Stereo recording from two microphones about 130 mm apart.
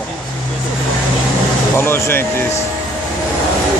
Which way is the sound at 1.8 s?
15° left (ahead or behind).